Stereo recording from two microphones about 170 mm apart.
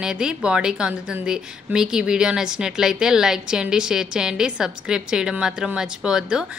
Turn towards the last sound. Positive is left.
turn(degrees=-5)  # may be behind; listen again after turning